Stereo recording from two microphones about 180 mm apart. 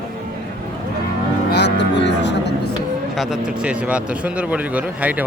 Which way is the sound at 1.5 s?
70° left (ahead or behind).